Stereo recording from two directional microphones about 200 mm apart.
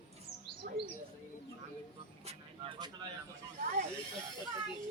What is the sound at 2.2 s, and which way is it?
Vehicle, 25° right (ahead or behind).